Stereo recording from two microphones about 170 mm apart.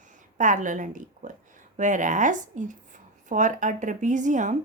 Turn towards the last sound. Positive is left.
turn(degrees=-45)  # may be behind; listen again after turning